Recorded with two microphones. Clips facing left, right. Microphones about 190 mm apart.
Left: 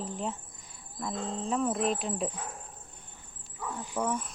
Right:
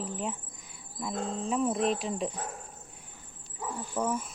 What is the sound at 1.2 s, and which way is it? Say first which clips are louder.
Speech: right 2 dB; 30° left (ahead or behind).